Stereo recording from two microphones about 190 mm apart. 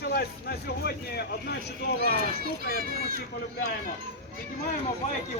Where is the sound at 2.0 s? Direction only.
55° right (ahead or behind).